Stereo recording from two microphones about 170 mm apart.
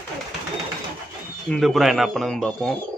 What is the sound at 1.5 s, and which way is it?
Speech, centre (ahead or behind).